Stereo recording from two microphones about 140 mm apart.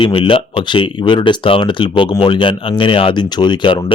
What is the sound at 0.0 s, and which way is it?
Speech, 40° left (ahead or behind).